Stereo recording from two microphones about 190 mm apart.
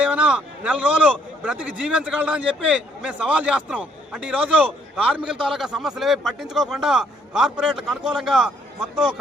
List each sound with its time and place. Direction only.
0.0 s a man's voice: 5° right (ahead or behind)